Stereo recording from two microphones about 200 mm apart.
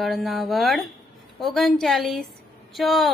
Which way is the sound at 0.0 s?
Centre (ahead or behind).